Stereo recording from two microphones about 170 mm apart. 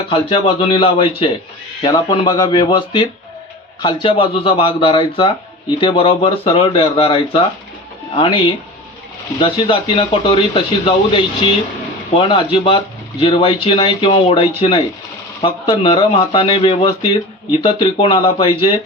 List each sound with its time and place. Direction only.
0.1 s speech: 30° left (ahead or behind)